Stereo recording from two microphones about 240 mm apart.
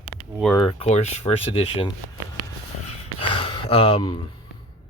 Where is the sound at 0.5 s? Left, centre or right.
Left.